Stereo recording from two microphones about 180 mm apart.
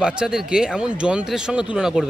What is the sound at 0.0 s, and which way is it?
Speech, 5° right (ahead or behind).